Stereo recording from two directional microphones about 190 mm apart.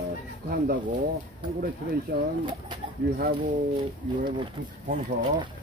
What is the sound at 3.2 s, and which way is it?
Speech, 50° right (ahead or behind).